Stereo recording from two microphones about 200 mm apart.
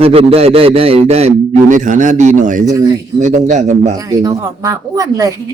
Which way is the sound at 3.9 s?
15° right (ahead or behind).